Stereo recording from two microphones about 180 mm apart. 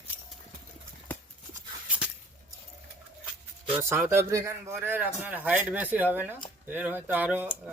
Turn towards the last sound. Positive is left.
turn(degrees=-10)  # may be behind; listen again after turning